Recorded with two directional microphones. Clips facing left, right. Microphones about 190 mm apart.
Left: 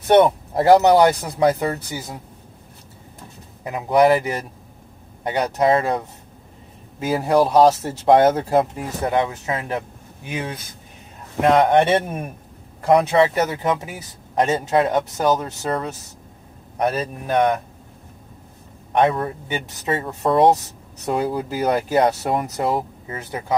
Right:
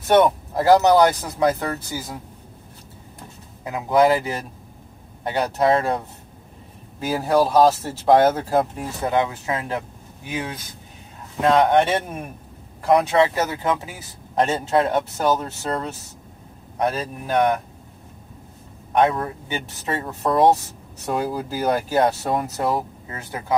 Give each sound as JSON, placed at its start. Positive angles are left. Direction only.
{"t": 0.0, "sound": "speech", "side_deg": 20}
{"t": 3.6, "sound": "speech", "side_deg": 20}
{"t": 16.9, "sound": "speech", "side_deg": 20}
{"t": 18.9, "sound": "speech", "side_deg": 25}